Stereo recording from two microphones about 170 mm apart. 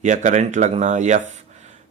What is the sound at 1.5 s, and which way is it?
Beatboxing, 40° right (ahead or behind).